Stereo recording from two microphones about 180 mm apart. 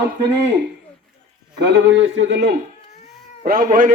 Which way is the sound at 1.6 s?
80° right.